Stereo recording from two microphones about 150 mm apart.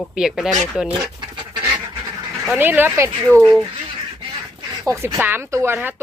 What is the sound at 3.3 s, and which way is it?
Speech, 15° left (ahead or behind).